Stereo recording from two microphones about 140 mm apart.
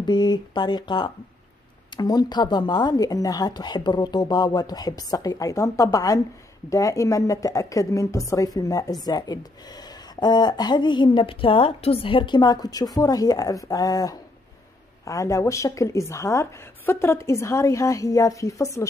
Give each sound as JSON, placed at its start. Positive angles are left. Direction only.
{"t": 0.0, "sound": "a woman's voice", "side_deg": 30}